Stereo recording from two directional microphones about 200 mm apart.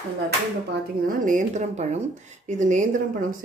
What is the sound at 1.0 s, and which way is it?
A woman's voice, 40° right (ahead or behind).